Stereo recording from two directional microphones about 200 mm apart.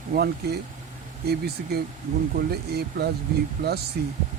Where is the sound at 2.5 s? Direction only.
55° right (ahead or behind).